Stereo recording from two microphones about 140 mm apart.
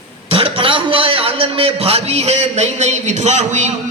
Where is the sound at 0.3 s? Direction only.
40° right (ahead or behind).